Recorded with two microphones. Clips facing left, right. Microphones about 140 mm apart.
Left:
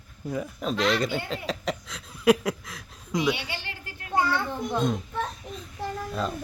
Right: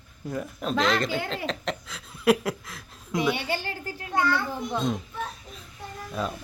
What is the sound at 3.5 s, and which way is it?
Speech, 40° right (ahead or behind).